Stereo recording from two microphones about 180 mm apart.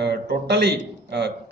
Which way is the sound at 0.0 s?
65° right (ahead or behind).